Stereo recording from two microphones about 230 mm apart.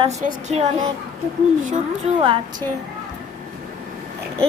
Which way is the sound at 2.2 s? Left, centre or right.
Right.